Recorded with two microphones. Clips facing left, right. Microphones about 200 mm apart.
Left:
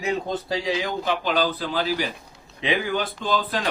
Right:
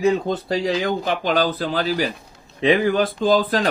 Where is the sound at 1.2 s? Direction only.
45° right (ahead or behind).